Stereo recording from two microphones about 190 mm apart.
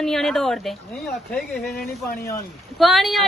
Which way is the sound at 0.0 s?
Centre (ahead or behind).